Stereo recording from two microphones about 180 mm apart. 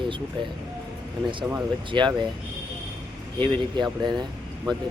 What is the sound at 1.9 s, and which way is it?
Speech, 25° right (ahead or behind).